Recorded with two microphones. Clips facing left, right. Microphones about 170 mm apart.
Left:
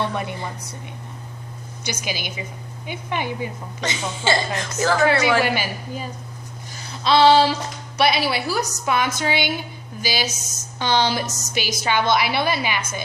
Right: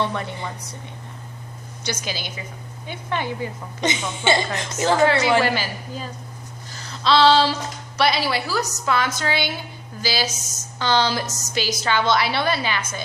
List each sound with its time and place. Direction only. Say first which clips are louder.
0.1 s a woman's voice: left 1 dB; 15° left (ahead or behind)
1.8 s a woman's voice: even; 15° left (ahead or behind)
3.8 s a woman's voice: right 3 dB; 20° right (ahead or behind)
5.4 s a woman's voice: even; 15° left (ahead or behind)
6.7 s a sound: left 1 dB; 15° left (ahead or behind)
7.9 s a woman's voice: left 1 dB; 15° left (ahead or behind)